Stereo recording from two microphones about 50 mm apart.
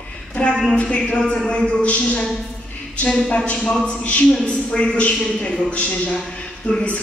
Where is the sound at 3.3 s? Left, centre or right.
Left.